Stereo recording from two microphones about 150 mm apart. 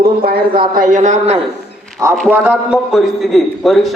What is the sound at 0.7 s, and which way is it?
Speech, 65° right (ahead or behind).